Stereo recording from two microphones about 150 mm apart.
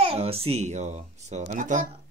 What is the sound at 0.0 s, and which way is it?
A child's voice, 40° right (ahead or behind).